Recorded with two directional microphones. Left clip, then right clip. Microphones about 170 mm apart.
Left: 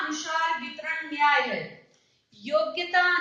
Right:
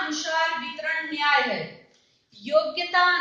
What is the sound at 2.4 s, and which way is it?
Speech, 30° left (ahead or behind).